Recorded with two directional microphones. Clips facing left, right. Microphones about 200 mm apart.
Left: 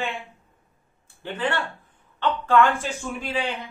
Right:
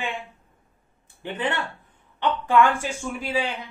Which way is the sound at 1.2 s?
20° right (ahead or behind).